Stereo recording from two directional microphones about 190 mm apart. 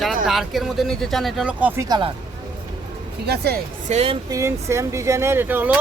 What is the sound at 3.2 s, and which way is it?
Speech, 55° right (ahead or behind).